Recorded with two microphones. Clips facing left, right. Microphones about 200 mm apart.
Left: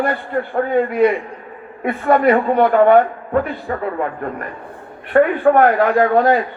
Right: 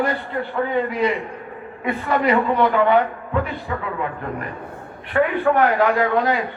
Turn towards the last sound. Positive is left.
turn(degrees=50)  # may be behind; listen again after turning